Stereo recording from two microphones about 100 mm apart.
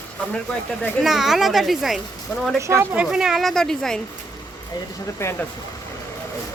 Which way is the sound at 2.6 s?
30° right (ahead or behind).